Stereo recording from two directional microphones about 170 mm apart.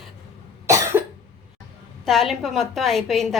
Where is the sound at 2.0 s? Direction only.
Centre (ahead or behind).